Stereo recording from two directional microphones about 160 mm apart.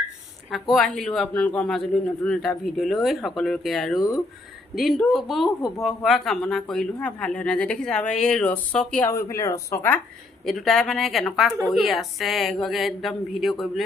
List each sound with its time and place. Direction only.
0.5 s a man's voice: centre (ahead or behind)
9.0 s speech: 15° left (ahead or behind)
10.4 s a man's voice: centre (ahead or behind)